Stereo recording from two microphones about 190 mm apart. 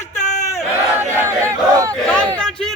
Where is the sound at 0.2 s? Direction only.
40° left (ahead or behind).